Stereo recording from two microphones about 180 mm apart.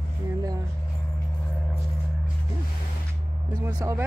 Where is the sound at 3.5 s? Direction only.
20° right (ahead or behind).